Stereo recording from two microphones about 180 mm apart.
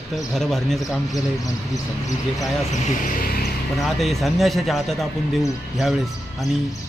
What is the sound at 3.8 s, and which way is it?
Speech, centre (ahead or behind).